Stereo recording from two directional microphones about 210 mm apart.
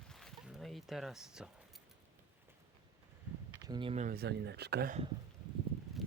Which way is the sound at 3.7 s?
25° right (ahead or behind).